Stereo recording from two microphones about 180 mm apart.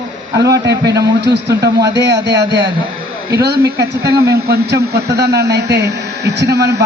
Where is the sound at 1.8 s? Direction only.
75° right (ahead or behind).